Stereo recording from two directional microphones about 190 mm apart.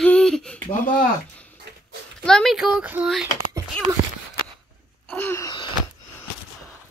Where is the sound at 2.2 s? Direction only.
Centre (ahead or behind).